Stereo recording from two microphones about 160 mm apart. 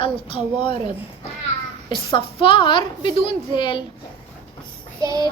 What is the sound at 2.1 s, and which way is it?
A woman's voice, 30° left (ahead or behind).